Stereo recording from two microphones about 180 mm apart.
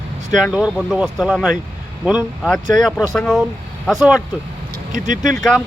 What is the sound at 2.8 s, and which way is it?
Speech, centre (ahead or behind).